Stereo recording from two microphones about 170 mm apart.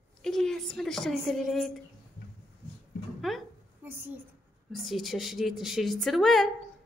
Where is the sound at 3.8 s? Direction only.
10° right (ahead or behind).